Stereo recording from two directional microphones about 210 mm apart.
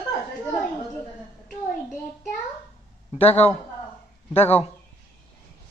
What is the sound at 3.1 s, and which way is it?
Speech, 30° left (ahead or behind).